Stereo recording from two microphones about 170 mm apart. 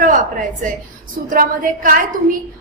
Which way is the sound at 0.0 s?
50° right (ahead or behind).